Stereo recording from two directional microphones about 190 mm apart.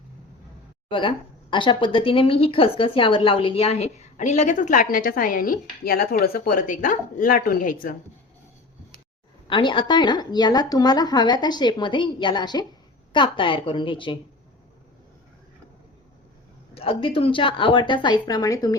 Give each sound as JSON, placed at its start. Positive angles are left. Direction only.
{"t": 0.9, "sound": "speech", "side_deg": 25}
{"t": 9.5, "sound": "speech", "side_deg": 25}
{"t": 16.7, "sound": "speech", "side_deg": 30}